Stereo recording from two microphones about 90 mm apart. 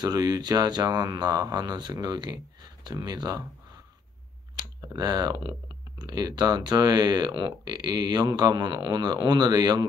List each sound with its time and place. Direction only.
0.0 s speech: 45° right (ahead or behind)
4.8 s speech: 50° right (ahead or behind)